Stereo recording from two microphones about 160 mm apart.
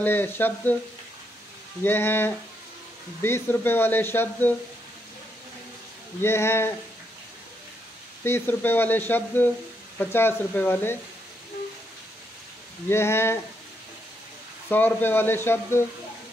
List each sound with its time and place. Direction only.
0.0 s speech: 10° left (ahead or behind)
1.8 s speech: 15° left (ahead or behind)
6.2 s speech: 15° left (ahead or behind)
8.2 s speech: 15° left (ahead or behind)
12.8 s speech: 15° left (ahead or behind)
14.7 s speech: 10° left (ahead or behind)